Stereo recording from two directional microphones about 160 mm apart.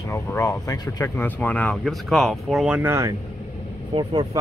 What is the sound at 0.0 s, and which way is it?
Speech, 20° left (ahead or behind).